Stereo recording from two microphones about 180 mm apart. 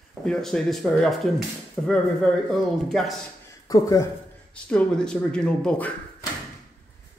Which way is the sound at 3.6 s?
20° left (ahead or behind).